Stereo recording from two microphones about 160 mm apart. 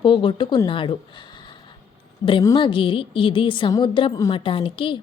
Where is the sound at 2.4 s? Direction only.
30° left (ahead or behind).